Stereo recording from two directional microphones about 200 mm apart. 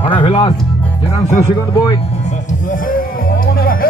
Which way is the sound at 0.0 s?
25° left (ahead or behind).